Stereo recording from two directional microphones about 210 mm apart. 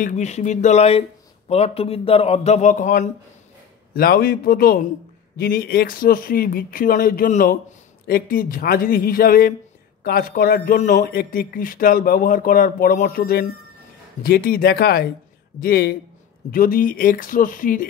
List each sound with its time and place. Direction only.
0.0 s a man's voice: 35° left (ahead or behind)